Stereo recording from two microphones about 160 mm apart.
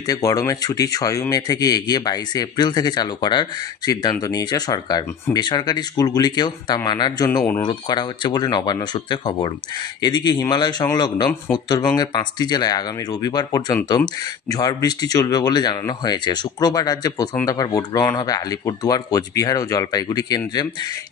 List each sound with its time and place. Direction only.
0.0 s speech: 20° left (ahead or behind)
7.2 s speech: 15° left (ahead or behind)